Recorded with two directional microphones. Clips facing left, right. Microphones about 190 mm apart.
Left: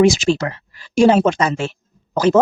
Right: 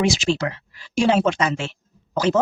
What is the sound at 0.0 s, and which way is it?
Speech, 45° left (ahead or behind).